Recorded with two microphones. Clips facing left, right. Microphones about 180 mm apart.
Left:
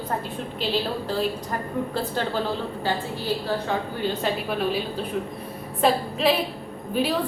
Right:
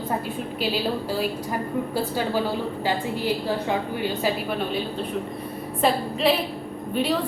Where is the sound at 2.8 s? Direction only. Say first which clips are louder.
Right 2 dB; 15° right (ahead or behind).